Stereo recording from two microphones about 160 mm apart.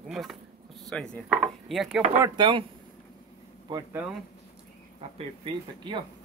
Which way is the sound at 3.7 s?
25° right (ahead or behind).